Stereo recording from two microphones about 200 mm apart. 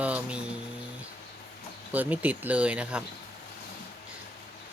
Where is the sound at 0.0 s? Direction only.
5° right (ahead or behind).